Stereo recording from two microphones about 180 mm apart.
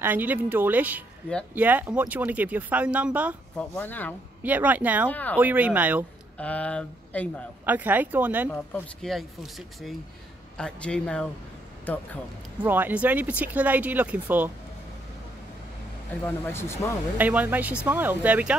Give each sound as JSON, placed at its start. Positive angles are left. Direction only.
{"t": 0.0, "sound": "speech", "side_deg": -10}
{"t": 3.5, "sound": "speech", "side_deg": 10}
{"t": 4.4, "sound": "speech", "side_deg": -10}
{"t": 5.1, "sound": "speech", "side_deg": 10}
{"t": 5.4, "sound": "speech", "side_deg": -10}
{"t": 6.3, "sound": "speech", "side_deg": 5}
{"t": 7.6, "sound": "speech", "side_deg": -10}
{"t": 8.5, "sound": "speech", "side_deg": 5}
{"t": 12.6, "sound": "speech", "side_deg": -10}
{"t": 16.5, "sound": "speech", "side_deg": 15}
{"t": 17.2, "sound": "speech", "side_deg": -10}